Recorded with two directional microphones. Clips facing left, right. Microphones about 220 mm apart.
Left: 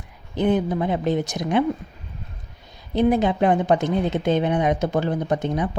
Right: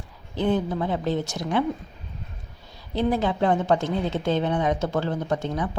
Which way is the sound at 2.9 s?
20° left (ahead or behind).